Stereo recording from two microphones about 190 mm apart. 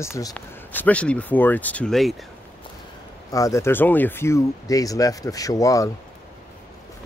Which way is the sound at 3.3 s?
15° left (ahead or behind).